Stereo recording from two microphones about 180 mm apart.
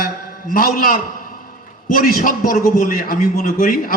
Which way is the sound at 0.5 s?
55° left (ahead or behind).